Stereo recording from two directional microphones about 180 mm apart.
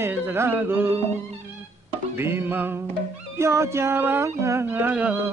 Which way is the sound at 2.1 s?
10° right (ahead or behind).